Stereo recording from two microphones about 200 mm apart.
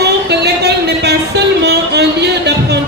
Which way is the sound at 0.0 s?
55° right (ahead or behind).